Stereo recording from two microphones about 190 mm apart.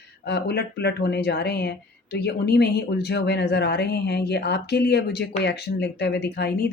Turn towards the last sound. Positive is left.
turn(degrees=55)  # may be behind; listen again after turning